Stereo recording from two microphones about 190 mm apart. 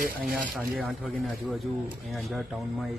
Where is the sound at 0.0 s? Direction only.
50° right (ahead or behind).